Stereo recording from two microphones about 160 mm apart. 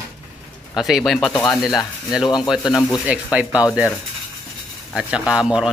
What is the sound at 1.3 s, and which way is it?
Speech, 25° left (ahead or behind).